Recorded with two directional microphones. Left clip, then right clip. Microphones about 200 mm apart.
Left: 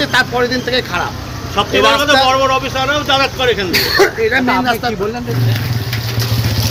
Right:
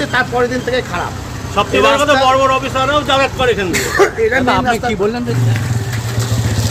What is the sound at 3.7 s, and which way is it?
Speech, 5° left (ahead or behind).